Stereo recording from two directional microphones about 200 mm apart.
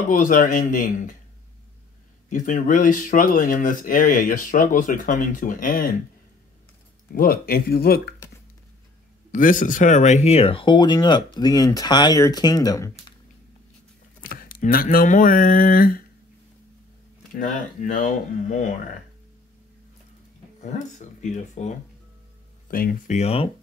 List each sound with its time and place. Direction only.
0.1 s speech: 40° left (ahead or behind)
2.2 s speech: 40° left (ahead or behind)
7.1 s speech: 50° left (ahead or behind)
9.3 s speech: 40° left (ahead or behind); by 12.9 s 20° left (ahead or behind)
14.3 s speech: 45° left (ahead or behind)
17.3 s speech: 40° left (ahead or behind)
20.6 s speech: 35° left (ahead or behind)
22.7 s speech: 45° left (ahead or behind); by 23.5 s 30° left (ahead or behind)